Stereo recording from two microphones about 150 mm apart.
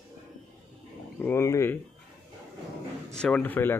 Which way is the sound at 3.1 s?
5° left (ahead or behind).